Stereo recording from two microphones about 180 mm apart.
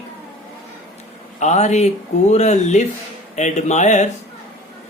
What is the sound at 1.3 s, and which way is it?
Speech, 40° left (ahead or behind).